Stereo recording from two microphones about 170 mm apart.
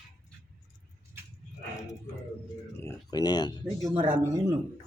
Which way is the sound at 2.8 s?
20° left (ahead or behind).